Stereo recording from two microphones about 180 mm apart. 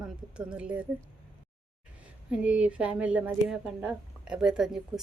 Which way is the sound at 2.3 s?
5° right (ahead or behind).